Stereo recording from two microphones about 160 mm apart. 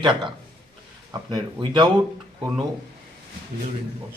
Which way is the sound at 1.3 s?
25° right (ahead or behind).